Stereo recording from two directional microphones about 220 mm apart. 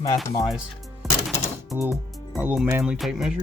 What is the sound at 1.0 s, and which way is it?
Music, centre (ahead or behind).